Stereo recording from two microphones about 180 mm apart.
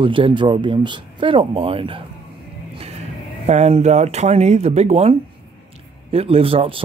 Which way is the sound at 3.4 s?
40° right (ahead or behind).